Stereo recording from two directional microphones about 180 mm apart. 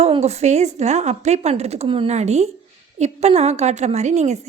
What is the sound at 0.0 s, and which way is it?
A woman's voice, 35° right (ahead or behind).